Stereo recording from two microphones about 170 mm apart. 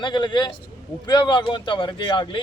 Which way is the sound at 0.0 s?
25° left (ahead or behind).